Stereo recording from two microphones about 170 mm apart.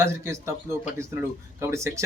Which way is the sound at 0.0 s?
15° right (ahead or behind).